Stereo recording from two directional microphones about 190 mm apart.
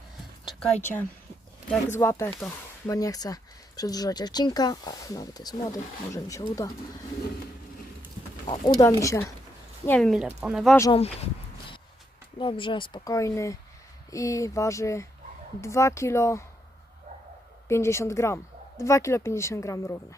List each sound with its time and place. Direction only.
0.4 s speech: 5° left (ahead or behind)
8.4 s speech: 20° left (ahead or behind)
10.1 s speech: 5° right (ahead or behind)
12.4 s speech: 25° left (ahead or behind)
17.7 s speech: 15° left (ahead or behind)